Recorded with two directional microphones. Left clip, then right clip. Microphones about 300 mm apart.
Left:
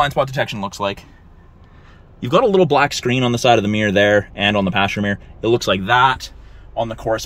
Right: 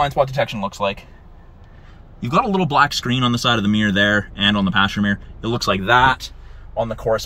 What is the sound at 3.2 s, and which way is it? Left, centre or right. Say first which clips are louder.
Speech: left 5 dB; left.